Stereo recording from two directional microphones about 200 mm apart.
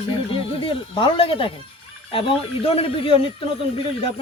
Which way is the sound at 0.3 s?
25° left (ahead or behind).